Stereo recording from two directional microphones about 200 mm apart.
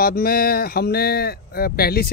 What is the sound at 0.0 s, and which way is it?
Speech, 45° left (ahead or behind).